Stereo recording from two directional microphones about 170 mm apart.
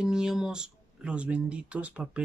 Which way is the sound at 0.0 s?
5° right (ahead or behind).